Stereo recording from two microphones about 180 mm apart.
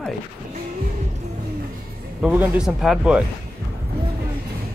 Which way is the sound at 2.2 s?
5° right (ahead or behind).